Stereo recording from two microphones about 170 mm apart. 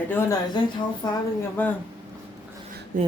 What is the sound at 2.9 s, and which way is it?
Speech, 50° right (ahead or behind).